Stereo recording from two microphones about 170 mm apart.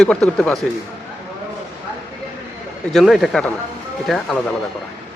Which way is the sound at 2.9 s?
Centre (ahead or behind).